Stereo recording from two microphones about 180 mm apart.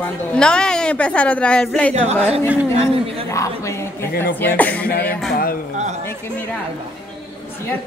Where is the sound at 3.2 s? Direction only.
15° left (ahead or behind).